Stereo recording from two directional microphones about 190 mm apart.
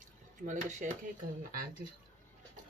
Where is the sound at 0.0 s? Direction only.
40° right (ahead or behind).